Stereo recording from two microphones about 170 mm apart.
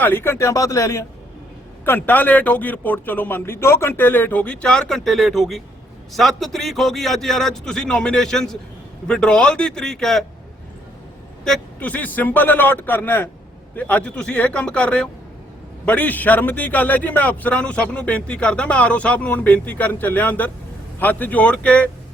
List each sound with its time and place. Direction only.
0.0 s a man's voice: 15° left (ahead or behind)
11.4 s a man's voice: 5° left (ahead or behind)